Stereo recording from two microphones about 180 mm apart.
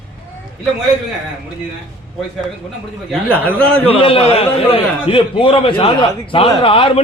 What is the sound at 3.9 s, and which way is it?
A man's voice, 30° left (ahead or behind).